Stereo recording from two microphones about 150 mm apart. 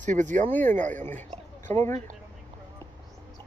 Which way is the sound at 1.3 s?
45° right (ahead or behind).